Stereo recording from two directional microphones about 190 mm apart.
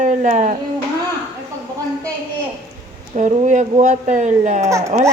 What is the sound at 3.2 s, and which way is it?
Speech, 40° right (ahead or behind).